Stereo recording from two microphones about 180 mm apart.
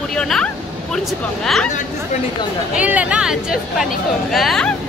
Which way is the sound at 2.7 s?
5° right (ahead or behind).